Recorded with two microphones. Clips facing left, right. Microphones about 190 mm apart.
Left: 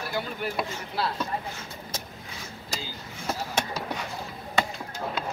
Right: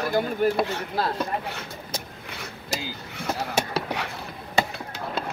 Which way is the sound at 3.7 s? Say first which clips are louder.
Right 4 dB; 70° right (ahead or behind).